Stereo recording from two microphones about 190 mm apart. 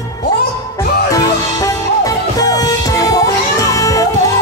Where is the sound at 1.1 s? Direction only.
20° left (ahead or behind).